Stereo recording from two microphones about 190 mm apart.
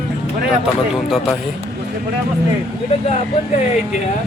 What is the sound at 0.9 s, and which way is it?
Speech, centre (ahead or behind).